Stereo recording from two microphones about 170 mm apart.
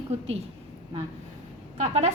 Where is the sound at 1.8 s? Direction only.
40° right (ahead or behind).